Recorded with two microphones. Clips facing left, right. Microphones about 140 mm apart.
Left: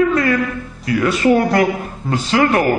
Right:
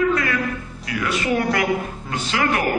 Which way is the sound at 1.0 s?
40° left (ahead or behind).